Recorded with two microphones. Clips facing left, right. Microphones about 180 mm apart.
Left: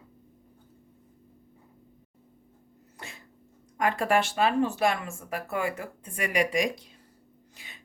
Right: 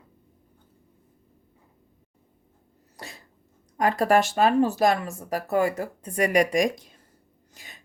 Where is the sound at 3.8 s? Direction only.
40° right (ahead or behind).